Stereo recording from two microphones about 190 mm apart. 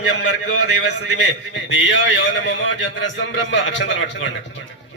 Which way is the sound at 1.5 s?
75° left (ahead or behind).